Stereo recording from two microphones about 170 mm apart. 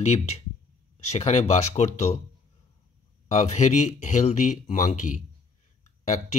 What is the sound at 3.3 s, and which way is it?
Speech, 45° left (ahead or behind).